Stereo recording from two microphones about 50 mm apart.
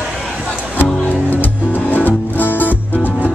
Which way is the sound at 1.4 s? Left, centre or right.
Left.